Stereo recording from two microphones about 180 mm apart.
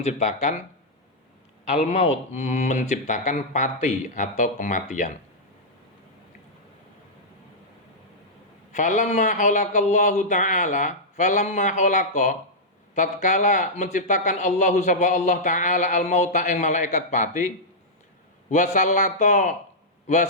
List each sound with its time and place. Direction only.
0.0 s speech: 40° left (ahead or behind)
1.6 s speech: 35° left (ahead or behind)
8.7 s speech: 45° left (ahead or behind)
18.5 s speech: 45° left (ahead or behind)